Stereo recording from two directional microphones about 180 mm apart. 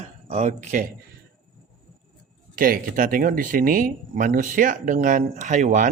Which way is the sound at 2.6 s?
50° right (ahead or behind).